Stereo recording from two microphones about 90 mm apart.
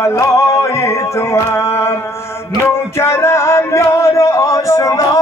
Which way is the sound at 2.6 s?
30° left (ahead or behind).